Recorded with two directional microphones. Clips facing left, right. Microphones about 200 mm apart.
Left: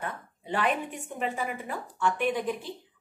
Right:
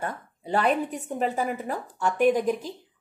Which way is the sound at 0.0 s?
40° right (ahead or behind).